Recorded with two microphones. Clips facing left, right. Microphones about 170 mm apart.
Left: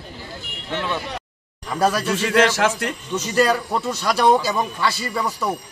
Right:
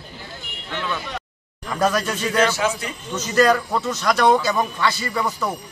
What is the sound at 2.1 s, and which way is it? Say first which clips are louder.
Speech: left 2 dB; 90° left.